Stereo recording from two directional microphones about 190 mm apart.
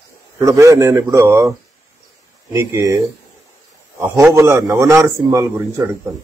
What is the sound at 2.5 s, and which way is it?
Speech, 15° right (ahead or behind).